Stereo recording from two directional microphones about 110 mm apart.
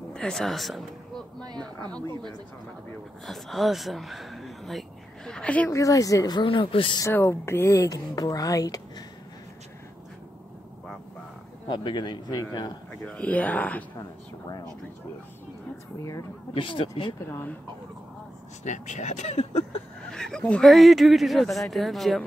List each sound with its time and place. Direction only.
0.1 s speech: 5° left (ahead or behind)
3.3 s speech: centre (ahead or behind)
5.7 s speech: 30° left (ahead or behind)
6.4 s speech: 50° left (ahead or behind)
7.1 s speech: 25° left (ahead or behind)
11.7 s speech: 45° left (ahead or behind)
13.0 s speech: 10° left (ahead or behind)
16.0 s speech: 30° left (ahead or behind)
16.5 s speech: 55° left (ahead or behind)
17.3 s speech: 20° left (ahead or behind)
18.6 s speech: 90° left
20.1 s speech: 5° left (ahead or behind)